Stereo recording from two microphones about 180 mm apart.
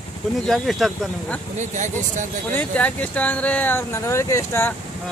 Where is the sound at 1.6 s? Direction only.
45° right (ahead or behind).